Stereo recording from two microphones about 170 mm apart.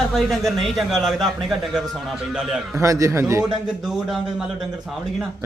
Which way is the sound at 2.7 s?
20° right (ahead or behind).